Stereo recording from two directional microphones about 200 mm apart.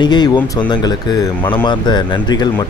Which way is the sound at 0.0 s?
20° left (ahead or behind).